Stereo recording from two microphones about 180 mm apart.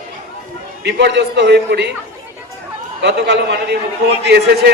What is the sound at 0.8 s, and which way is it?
A man's voice, 75° right (ahead or behind).